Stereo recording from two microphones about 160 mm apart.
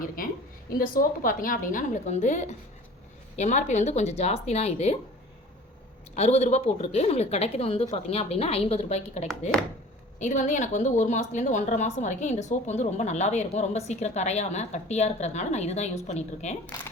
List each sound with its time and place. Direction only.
0.2 s a sound: 60° left (ahead or behind)
0.7 s a woman's voice: 60° left (ahead or behind); by 4.9 s 40° left (ahead or behind)
6.1 s a woman's voice: 40° left (ahead or behind)